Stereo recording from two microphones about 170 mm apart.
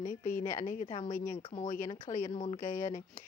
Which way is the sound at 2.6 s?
50° left (ahead or behind).